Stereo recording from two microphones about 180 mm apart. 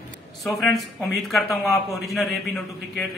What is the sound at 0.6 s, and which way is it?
Speech, centre (ahead or behind).